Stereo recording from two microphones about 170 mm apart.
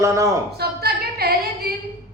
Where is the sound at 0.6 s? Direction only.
65° right (ahead or behind).